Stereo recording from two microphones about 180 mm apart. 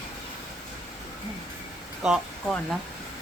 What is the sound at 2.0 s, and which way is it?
Speech, 5° right (ahead or behind).